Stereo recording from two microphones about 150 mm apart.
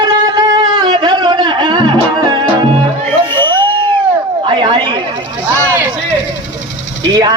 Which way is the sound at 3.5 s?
30° right (ahead or behind).